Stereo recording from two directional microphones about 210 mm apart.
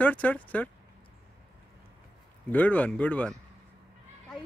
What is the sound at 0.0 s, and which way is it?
Speech, 5° left (ahead or behind).